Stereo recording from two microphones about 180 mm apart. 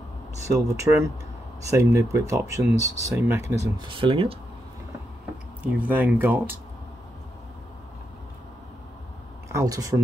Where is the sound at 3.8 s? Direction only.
30° right (ahead or behind).